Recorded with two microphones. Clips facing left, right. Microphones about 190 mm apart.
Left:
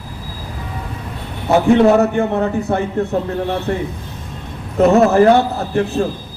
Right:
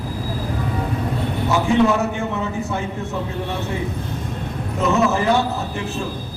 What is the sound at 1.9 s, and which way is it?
Speech, 60° left (ahead or behind).